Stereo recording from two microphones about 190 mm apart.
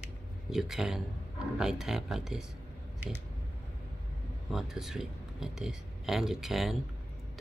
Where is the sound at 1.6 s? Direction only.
Centre (ahead or behind).